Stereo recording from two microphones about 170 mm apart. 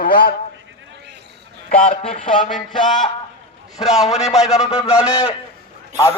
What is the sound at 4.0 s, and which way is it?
A man's voice, 40° left (ahead or behind).